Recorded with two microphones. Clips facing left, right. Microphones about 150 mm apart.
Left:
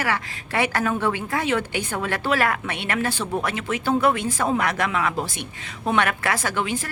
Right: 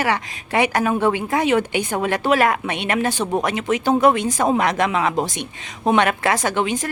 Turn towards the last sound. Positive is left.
turn(degrees=-20)  # may be behind; listen again after turning